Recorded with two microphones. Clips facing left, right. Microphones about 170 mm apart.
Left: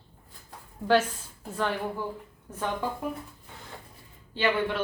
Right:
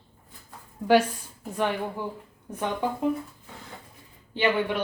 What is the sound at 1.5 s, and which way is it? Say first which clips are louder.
Speech: right 2 dB; 15° right (ahead or behind).